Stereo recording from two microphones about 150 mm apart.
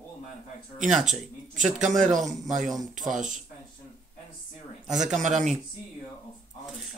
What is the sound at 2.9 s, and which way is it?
Speech, 60° right (ahead or behind).